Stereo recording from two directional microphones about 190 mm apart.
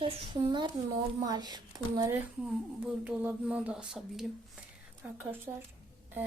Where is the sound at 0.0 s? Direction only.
25° right (ahead or behind).